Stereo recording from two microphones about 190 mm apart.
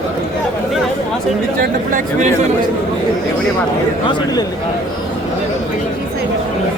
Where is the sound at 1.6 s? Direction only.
45° right (ahead or behind).